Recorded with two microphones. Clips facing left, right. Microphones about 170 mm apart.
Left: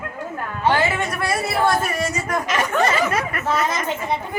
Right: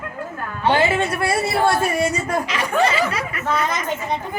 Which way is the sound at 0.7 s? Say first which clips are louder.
Right 3 dB; 30° right (ahead or behind).